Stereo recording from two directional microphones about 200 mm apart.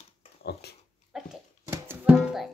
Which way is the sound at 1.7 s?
10° right (ahead or behind).